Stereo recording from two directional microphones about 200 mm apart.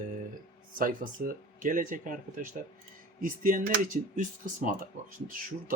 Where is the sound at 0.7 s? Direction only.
45° right (ahead or behind).